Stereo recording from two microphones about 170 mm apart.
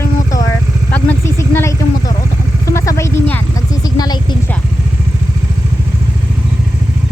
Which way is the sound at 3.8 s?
25° left (ahead or behind).